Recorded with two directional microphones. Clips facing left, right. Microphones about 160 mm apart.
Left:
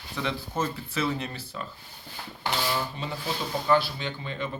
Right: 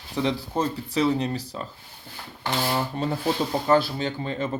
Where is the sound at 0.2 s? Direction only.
35° right (ahead or behind).